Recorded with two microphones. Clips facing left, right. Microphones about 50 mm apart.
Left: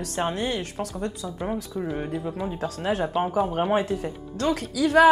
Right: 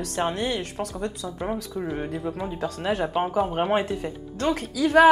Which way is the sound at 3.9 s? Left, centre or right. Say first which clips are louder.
Left 1 dB; right.